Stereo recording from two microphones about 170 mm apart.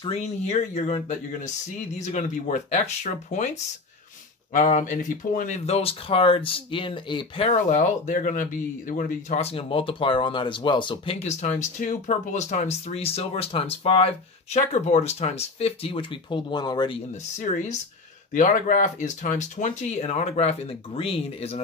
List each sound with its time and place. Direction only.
0.1 s speech: 40° left (ahead or behind)
7.4 s speech: 45° left (ahead or behind); by 11.1 s 30° left (ahead or behind)
11.2 s speech: 40° left (ahead or behind); by 16.9 s 25° left (ahead or behind)
17.1 s speech: 45° left (ahead or behind)